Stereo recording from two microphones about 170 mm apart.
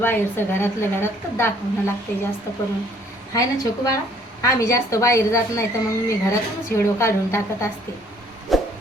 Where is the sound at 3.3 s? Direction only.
20° left (ahead or behind).